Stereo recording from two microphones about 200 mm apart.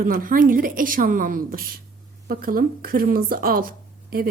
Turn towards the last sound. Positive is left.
turn(degrees=-45)  # may be behind; listen again after turning